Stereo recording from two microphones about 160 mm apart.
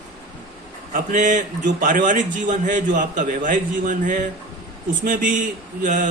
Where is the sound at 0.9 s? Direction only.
55° right (ahead or behind).